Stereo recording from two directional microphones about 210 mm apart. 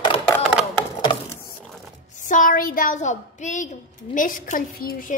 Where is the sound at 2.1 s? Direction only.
40° left (ahead or behind).